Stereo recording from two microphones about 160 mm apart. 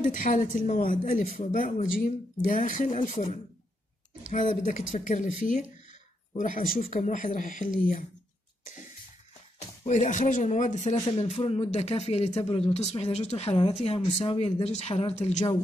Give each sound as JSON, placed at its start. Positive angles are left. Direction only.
{"t": 0.0, "sound": "speech", "side_deg": 55}
{"t": 9.8, "sound": "speech", "side_deg": 45}